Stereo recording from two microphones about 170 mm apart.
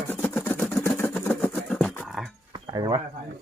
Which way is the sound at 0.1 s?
10° left (ahead or behind).